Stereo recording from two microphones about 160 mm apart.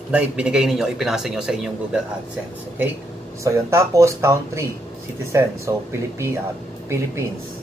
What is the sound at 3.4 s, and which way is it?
Speech, 20° right (ahead or behind).